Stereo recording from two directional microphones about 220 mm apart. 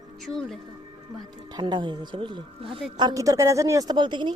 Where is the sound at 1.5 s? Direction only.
20° right (ahead or behind).